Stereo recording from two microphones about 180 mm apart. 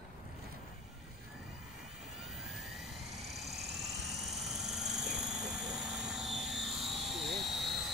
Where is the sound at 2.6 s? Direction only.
Centre (ahead or behind).